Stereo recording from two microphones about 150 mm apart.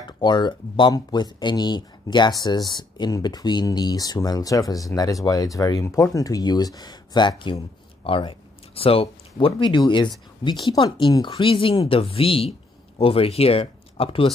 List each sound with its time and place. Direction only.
0.2 s speech: 30° left (ahead or behind)